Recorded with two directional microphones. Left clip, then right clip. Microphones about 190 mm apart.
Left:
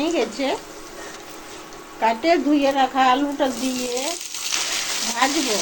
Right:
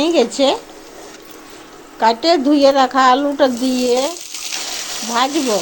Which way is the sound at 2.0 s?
40° right (ahead or behind).